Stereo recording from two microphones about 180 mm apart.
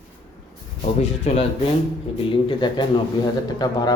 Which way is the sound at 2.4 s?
25° left (ahead or behind).